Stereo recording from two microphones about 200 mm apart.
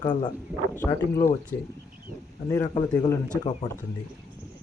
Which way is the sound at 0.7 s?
15° left (ahead or behind).